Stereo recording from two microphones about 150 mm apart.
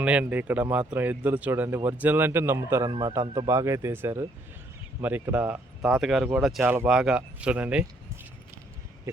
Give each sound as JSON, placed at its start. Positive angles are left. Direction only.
{"t": 0.0, "sound": "a man's voice", "side_deg": -10}
{"t": 6.6, "sound": "a man's voice", "side_deg": -15}
{"t": 6.8, "sound": "a man's voice", "side_deg": -5}